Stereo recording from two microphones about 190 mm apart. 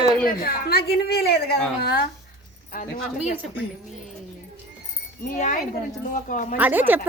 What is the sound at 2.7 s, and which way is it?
Speech, 45° left (ahead or behind).